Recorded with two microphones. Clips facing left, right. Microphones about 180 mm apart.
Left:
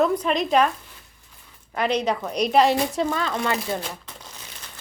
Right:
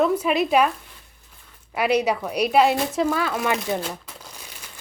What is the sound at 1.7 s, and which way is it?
Speech, 10° right (ahead or behind).